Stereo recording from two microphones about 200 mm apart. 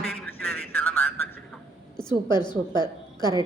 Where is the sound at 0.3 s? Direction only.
5° left (ahead or behind).